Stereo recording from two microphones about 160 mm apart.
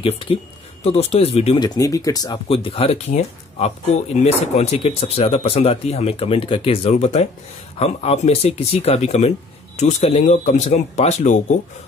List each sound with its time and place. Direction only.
0.0 s speech: 35° left (ahead or behind)
1.6 s speech: 20° left (ahead or behind)
2.5 s speech: 35° left (ahead or behind)